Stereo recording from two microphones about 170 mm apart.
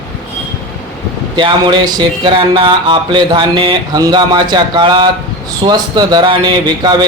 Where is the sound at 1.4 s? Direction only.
30° right (ahead or behind).